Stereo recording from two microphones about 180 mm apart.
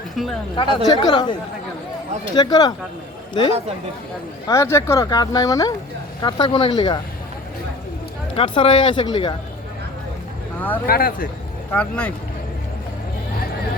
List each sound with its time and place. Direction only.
0.2 s speech: centre (ahead or behind)
0.5 s speech: 25° left (ahead or behind)
4.4 s speech: 15° left (ahead or behind)
8.4 s speech: 30° left (ahead or behind)
10.8 s speech: 55° left (ahead or behind)
11.7 s speech: 5° left (ahead or behind)